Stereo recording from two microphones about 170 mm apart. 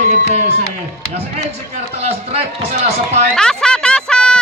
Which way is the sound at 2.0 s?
35° right (ahead or behind).